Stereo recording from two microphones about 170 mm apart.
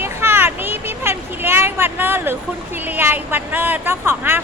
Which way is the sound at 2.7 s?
10° right (ahead or behind).